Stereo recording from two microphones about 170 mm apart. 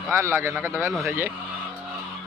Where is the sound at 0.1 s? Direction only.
15° right (ahead or behind).